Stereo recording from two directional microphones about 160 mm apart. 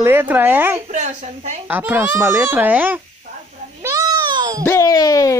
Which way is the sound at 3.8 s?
20° right (ahead or behind).